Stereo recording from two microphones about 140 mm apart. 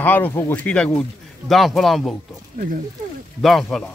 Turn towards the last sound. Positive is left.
turn(degrees=0)  # may be behind; listen again after turning